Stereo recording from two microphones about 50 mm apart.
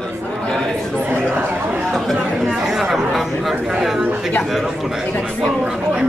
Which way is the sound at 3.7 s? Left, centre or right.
Centre.